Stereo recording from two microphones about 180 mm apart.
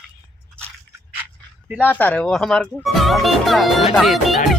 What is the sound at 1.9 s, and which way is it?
Speech, 10° left (ahead or behind).